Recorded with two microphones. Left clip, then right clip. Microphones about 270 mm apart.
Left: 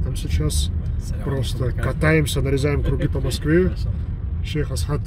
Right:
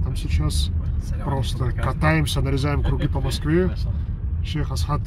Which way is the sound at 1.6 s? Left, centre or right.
Centre.